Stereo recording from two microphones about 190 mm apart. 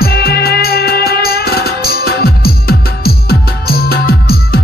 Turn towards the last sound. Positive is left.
turn(degrees=55)  # may be behind; listen again after turning